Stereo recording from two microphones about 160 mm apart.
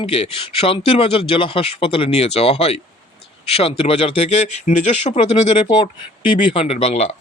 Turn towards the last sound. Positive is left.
turn(degrees=45)  # may be behind; listen again after turning